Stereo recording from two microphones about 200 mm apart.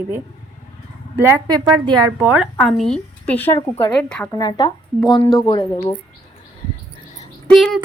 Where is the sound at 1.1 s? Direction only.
15° right (ahead or behind).